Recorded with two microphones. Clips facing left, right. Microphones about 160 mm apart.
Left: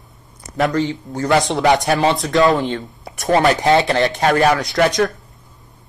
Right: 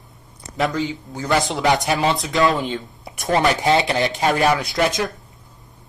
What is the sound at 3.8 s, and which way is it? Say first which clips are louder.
Speech: left 4 dB; 20° right (ahead or behind).